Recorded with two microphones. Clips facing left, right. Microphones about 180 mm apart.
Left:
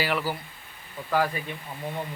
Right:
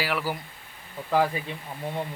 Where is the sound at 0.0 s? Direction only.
5° right (ahead or behind).